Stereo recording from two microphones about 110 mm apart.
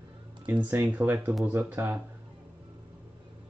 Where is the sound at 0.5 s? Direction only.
20° right (ahead or behind).